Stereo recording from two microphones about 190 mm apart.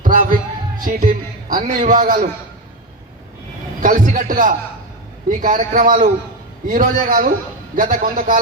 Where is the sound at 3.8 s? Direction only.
45° right (ahead or behind).